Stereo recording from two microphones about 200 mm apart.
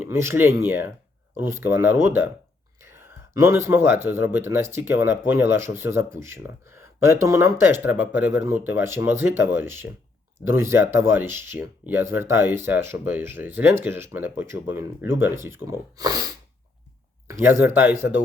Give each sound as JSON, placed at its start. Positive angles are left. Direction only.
{"t": 0.0, "sound": "speech", "side_deg": -10}